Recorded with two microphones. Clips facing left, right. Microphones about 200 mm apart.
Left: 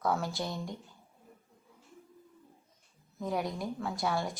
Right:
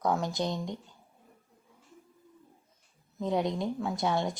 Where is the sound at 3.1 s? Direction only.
20° right (ahead or behind).